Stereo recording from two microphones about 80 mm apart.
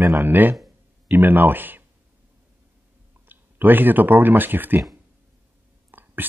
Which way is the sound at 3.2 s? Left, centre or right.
Right.